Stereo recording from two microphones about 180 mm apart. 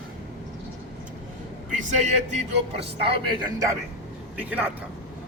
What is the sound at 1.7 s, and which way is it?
Speech, 45° right (ahead or behind).